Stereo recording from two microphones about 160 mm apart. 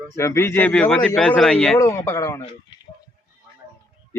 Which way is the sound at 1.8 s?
20° left (ahead or behind).